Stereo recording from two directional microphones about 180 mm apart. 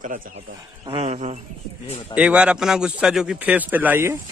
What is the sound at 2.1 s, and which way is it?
A man's voice, 5° right (ahead or behind).